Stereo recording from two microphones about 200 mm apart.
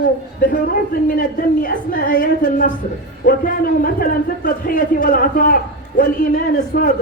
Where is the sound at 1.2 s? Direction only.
45° left (ahead or behind).